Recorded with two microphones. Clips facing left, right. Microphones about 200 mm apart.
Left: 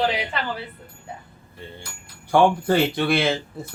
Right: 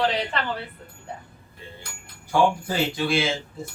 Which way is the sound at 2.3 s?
60° left (ahead or behind).